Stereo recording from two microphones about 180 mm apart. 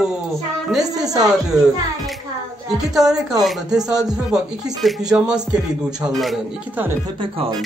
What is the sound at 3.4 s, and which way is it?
A man's voice, centre (ahead or behind).